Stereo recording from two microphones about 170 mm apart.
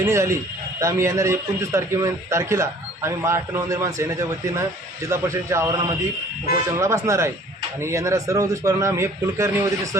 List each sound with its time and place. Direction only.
0.0 s a man's voice: 15° right (ahead or behind)
6.7 s a man's voice: 15° right (ahead or behind)